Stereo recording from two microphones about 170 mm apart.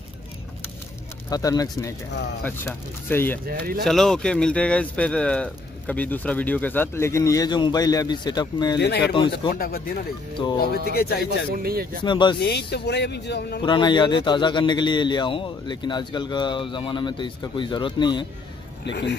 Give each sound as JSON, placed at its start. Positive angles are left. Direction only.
{"t": 1.3, "sound": "a man's voice", "side_deg": 20}
{"t": 3.4, "sound": "speech", "side_deg": -60}
{"t": 3.8, "sound": "speech", "side_deg": 0}
{"t": 8.7, "sound": "speech", "side_deg": 75}
{"t": 9.1, "sound": "a man's voice", "side_deg": 30}
{"t": 9.5, "sound": "speech", "side_deg": 65}
{"t": 11.2, "sound": "speech", "side_deg": -60}
{"t": 12.0, "sound": "a man's voice", "side_deg": 25}
{"t": 12.4, "sound": "speech", "side_deg": 75}
{"t": 13.6, "sound": "a man's voice", "side_deg": 25}
{"t": 18.9, "sound": "speech", "side_deg": 90}